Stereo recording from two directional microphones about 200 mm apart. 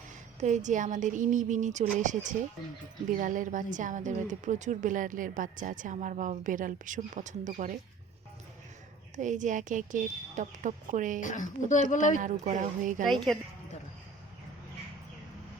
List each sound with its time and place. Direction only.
0.3 s speech: 35° right (ahead or behind)
9.1 s speech: 40° right (ahead or behind)
11.2 s a woman's voice: 40° left (ahead or behind)
12.2 s speech: 40° right (ahead or behind)
13.3 s a woman's voice: centre (ahead or behind)